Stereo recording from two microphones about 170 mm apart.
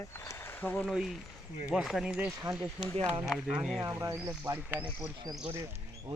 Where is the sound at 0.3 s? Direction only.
15° left (ahead or behind).